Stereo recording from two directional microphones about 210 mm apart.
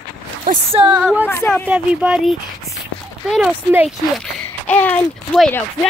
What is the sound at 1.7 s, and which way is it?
Speech, 5° right (ahead or behind).